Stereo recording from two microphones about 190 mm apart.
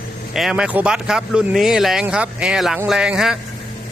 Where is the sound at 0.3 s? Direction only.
5° right (ahead or behind).